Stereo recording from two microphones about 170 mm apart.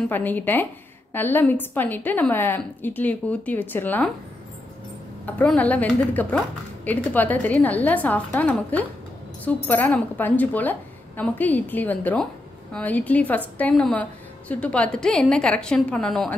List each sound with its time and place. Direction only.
0.1 s a woman's voice: 10° left (ahead or behind)
5.2 s a woman's voice: 10° left (ahead or behind)